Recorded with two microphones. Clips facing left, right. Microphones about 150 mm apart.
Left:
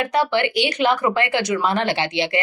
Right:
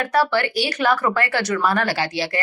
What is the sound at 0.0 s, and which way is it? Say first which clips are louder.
A woman's voice: even; 20° left (ahead or behind).